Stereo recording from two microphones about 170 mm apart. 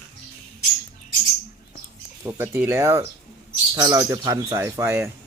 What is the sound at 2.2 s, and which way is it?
Speech, 15° right (ahead or behind).